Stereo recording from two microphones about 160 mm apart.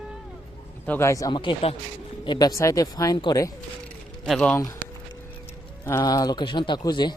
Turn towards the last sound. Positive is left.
turn(degrees=25)  # may be behind; listen again after turning